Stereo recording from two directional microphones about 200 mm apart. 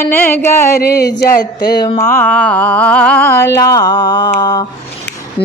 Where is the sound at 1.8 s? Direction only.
15° left (ahead or behind).